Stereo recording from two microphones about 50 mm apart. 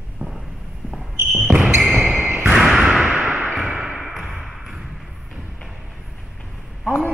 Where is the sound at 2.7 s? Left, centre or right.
Centre.